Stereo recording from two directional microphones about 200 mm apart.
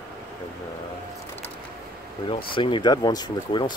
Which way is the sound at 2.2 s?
25° left (ahead or behind).